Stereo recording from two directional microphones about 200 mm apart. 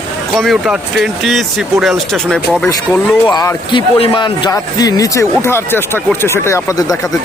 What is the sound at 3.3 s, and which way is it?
Speech, 20° left (ahead or behind).